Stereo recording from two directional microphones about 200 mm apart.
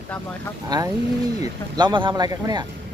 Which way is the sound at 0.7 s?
20° right (ahead or behind).